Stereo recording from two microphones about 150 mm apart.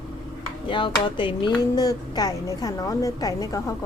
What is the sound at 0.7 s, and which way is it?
A woman's voice, 35° left (ahead or behind).